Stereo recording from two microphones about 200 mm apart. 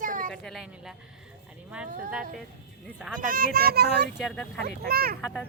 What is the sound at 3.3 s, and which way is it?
Speech, 45° right (ahead or behind).